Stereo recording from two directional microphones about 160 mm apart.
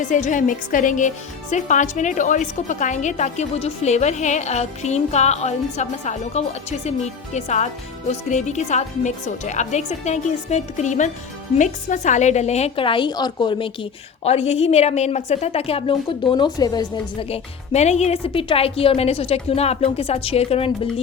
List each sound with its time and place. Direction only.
0.0 s a woman's voice: 50° left (ahead or behind); by 13.7 s 30° left (ahead or behind)
14.3 s a woman's voice: 40° left (ahead or behind); by 17.2 s 25° left (ahead or behind)
17.2 s a woman's voice: 40° left (ahead or behind)